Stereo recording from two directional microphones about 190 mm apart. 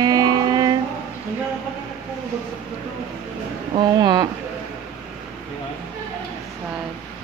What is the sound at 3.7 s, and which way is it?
Speech, 20° right (ahead or behind).